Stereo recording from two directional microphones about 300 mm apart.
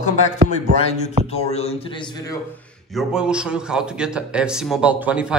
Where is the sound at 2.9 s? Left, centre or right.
Centre.